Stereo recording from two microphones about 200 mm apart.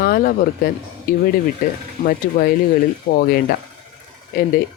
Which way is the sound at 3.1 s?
50° left (ahead or behind).